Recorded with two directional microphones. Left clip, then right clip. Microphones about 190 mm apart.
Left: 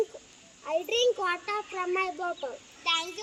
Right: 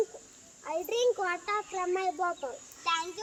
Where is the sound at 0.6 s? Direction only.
Centre (ahead or behind).